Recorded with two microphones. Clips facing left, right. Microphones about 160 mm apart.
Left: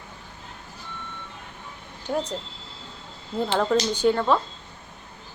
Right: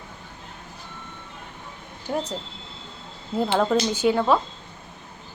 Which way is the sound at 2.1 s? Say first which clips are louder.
Even; centre (ahead or behind).